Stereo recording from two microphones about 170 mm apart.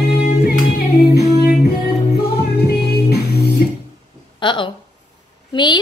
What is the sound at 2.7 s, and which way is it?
Music, 70° left (ahead or behind).